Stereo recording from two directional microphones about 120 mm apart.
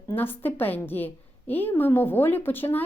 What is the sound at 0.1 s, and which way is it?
A woman's voice, 15° left (ahead or behind).